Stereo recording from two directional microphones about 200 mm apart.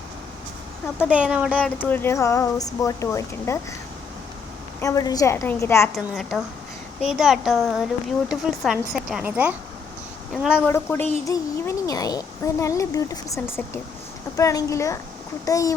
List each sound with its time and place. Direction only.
1.0 s speech: 5° right (ahead or behind)
1.8 s speech: 10° left (ahead or behind)
4.8 s speech: 15° left (ahead or behind)
5.9 s speech: centre (ahead or behind)
10.7 s speech: 10° left (ahead or behind)